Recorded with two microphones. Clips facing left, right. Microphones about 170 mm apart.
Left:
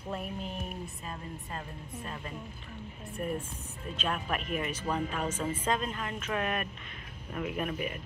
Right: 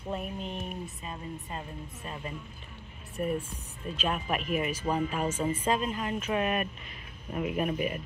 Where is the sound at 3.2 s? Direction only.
15° right (ahead or behind).